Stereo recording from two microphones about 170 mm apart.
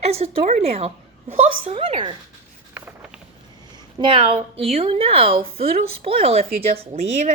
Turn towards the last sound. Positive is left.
turn(degrees=-40)  # may be behind; listen again after turning